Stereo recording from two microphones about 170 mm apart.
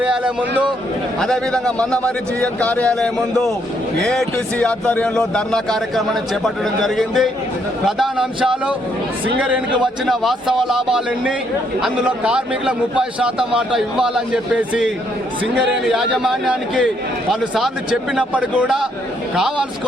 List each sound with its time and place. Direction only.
1.2 s a man's voice: 5° left (ahead or behind)